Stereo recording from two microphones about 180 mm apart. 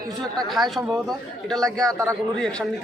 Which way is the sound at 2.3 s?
5° left (ahead or behind).